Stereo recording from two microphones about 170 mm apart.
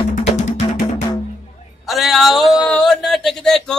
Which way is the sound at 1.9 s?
Centre (ahead or behind).